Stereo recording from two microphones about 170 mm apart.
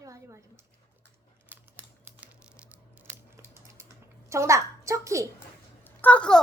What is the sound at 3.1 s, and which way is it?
Typing, 15° right (ahead or behind).